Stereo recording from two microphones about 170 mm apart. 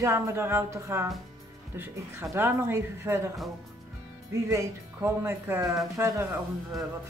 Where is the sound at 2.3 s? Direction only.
15° right (ahead or behind).